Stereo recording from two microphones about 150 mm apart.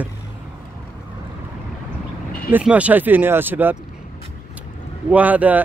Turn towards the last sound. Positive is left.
turn(degrees=-10)  # may be behind; listen again after turning